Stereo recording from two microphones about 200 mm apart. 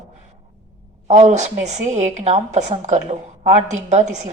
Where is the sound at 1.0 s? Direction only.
35° right (ahead or behind).